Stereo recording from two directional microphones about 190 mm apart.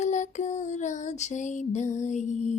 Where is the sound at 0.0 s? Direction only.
40° left (ahead or behind).